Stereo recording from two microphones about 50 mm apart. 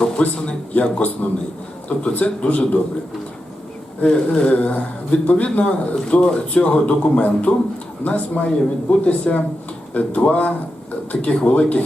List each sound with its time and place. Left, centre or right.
0.2 s a man's voice: left
4.0 s a man's voice: left